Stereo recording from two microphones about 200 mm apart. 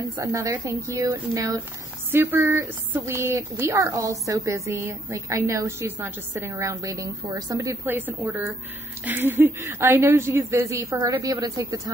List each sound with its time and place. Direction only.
0.0 s speech: 15° right (ahead or behind)